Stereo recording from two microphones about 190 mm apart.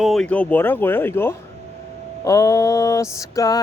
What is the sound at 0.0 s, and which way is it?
Speech, centre (ahead or behind).